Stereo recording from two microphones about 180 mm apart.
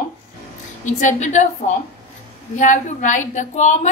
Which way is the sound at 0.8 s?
40° left (ahead or behind).